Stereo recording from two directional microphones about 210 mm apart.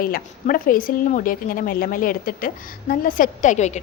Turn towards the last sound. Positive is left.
turn(degrees=35)  # may be behind; listen again after turning